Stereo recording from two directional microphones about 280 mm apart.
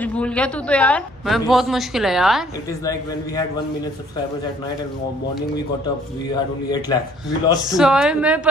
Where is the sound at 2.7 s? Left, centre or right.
Centre.